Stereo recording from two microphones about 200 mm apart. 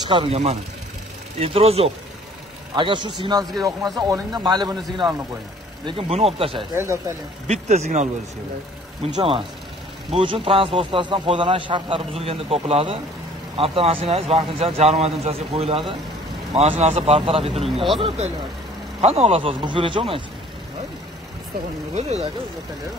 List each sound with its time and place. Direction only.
0.1 s a man's voice: 30° right (ahead or behind)
6.7 s speech: 15° right (ahead or behind)
7.6 s a man's voice: 35° right (ahead or behind)
21.9 s speech: 35° right (ahead or behind)